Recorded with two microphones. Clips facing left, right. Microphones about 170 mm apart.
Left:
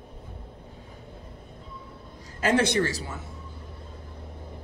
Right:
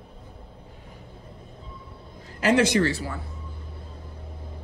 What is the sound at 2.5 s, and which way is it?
Speech, 40° left (ahead or behind).